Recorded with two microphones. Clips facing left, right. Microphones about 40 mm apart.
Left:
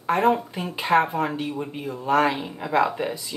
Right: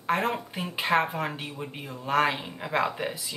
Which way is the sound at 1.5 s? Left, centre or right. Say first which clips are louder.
Left 7 dB; centre.